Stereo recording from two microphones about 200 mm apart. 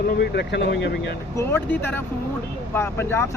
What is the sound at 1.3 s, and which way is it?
Speech, 10° left (ahead or behind).